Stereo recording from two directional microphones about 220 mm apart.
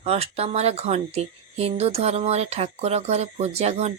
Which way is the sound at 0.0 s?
30° right (ahead or behind).